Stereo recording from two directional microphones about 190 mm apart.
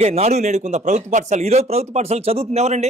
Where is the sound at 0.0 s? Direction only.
35° right (ahead or behind).